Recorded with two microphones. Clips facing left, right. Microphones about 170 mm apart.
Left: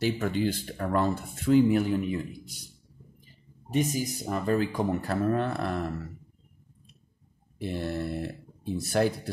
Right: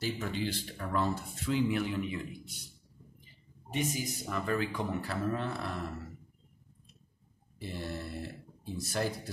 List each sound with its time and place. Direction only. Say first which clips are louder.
0.0 s speech: left 8 dB; 55° left (ahead or behind); by 2.7 s 40° left (ahead or behind)
3.7 s speech: left 7 dB; 40° left (ahead or behind); by 5.8 s 55° left (ahead or behind)
7.5 s speech: left 8 dB; 60° left (ahead or behind)